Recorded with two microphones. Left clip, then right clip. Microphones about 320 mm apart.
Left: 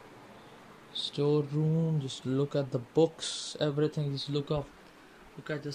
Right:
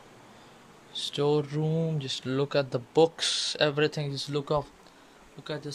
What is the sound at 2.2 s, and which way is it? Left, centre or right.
Speech, right.